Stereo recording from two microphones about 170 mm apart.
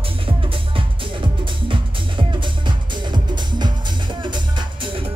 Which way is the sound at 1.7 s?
30° right (ahead or behind).